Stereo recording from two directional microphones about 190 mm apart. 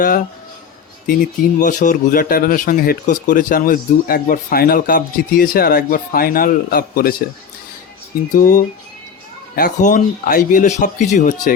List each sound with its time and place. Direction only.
0.0 s speech: 45° left (ahead or behind)
8.3 s speech: 45° left (ahead or behind)